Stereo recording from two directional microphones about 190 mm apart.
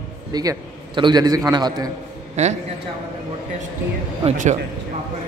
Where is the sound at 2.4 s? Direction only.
35° right (ahead or behind).